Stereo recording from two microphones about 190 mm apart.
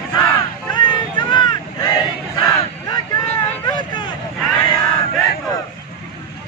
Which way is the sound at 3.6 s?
25° left (ahead or behind).